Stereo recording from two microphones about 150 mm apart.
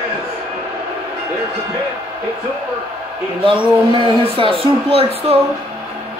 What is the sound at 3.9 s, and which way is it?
Speech, 40° right (ahead or behind).